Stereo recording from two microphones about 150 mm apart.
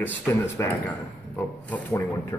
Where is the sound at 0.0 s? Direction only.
15° left (ahead or behind).